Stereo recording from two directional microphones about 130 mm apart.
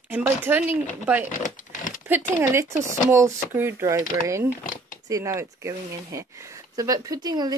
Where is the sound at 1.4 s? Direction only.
90° left.